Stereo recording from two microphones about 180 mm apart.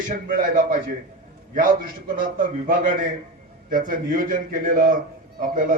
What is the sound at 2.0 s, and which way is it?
Speech, 50° right (ahead or behind).